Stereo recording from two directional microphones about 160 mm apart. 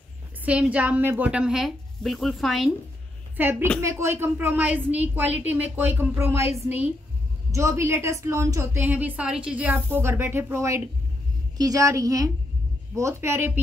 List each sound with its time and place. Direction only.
0.5 s a woman's voice: 10° right (ahead or behind)
3.3 s a woman's voice: 10° right (ahead or behind)
7.5 s a woman's voice: 15° right (ahead or behind)